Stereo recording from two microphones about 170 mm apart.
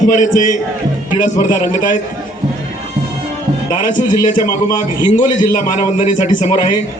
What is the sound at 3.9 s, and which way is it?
Speech, 50° left (ahead or behind).